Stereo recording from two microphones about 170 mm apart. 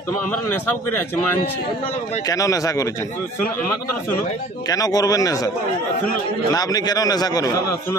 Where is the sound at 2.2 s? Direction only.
20° left (ahead or behind).